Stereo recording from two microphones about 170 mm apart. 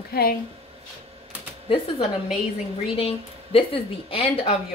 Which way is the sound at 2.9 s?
35° left (ahead or behind).